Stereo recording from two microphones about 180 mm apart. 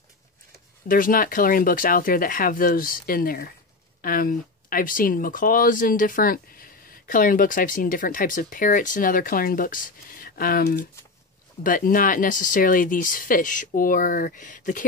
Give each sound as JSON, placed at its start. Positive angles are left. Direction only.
{"t": 0.8, "sound": "speech", "side_deg": 50}